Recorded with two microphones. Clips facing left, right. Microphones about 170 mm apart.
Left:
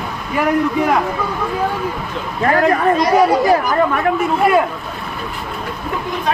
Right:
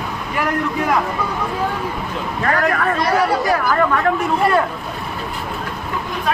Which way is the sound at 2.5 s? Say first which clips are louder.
Left 5 dB; 25° left (ahead or behind).